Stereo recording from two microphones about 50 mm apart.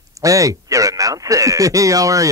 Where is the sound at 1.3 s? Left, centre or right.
Right.